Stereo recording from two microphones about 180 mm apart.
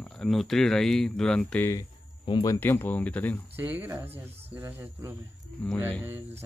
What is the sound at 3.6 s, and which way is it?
A child's voice, 10° right (ahead or behind).